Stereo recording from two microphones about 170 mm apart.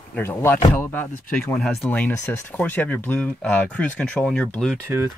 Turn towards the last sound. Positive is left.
turn(degrees=5)  # may be behind; listen again after turning